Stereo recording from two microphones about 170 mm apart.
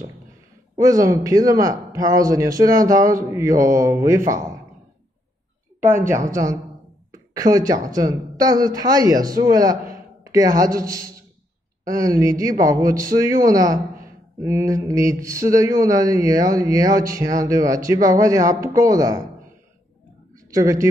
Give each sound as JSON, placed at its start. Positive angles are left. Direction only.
{"t": 0.7, "sound": "a man's voice", "side_deg": -20}
{"t": 6.0, "sound": "speech", "side_deg": -15}
{"t": 20.5, "sound": "speech", "side_deg": -20}